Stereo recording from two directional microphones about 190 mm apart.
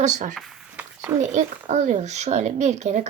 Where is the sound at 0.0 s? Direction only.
40° right (ahead or behind).